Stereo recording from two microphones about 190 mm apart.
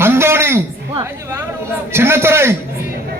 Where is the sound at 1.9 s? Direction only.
10° right (ahead or behind).